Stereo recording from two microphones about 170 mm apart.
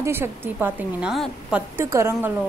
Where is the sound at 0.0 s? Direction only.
15° right (ahead or behind).